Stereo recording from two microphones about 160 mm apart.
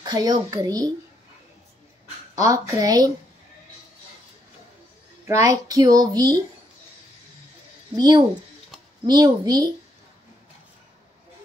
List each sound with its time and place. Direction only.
0.0 s speech: 25° right (ahead or behind)
2.3 s speech: 20° right (ahead or behind)
5.2 s speech: 20° right (ahead or behind)
7.9 s speech: 25° right (ahead or behind)